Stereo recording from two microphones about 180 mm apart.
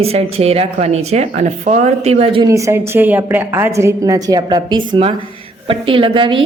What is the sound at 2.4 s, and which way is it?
A woman's voice, 15° right (ahead or behind).